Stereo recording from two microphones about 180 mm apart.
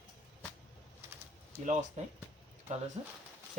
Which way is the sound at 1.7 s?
40° right (ahead or behind).